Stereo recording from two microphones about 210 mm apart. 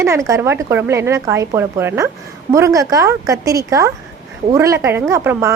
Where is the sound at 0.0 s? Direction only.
15° right (ahead or behind).